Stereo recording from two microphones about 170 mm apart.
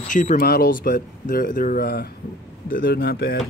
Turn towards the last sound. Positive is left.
turn(degrees=65)  # may be behind; listen again after turning